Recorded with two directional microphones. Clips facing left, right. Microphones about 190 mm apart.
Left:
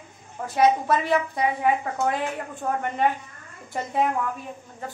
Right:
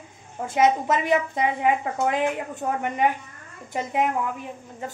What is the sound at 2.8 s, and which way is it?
A woman's voice, 15° right (ahead or behind).